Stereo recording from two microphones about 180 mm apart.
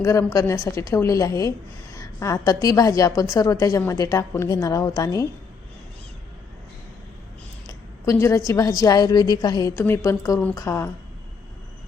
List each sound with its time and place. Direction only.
0.0 s a woman's voice: 15° left (ahead or behind)
7.7 s a woman's voice: 15° left (ahead or behind)